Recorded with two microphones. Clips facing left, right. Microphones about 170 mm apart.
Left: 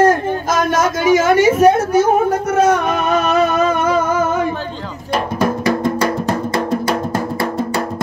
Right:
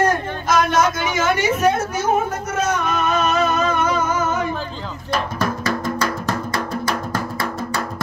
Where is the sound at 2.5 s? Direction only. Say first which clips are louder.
Left 6 dB; 60° left (ahead or behind).